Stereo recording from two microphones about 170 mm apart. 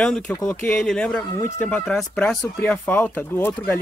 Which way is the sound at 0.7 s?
5° left (ahead or behind).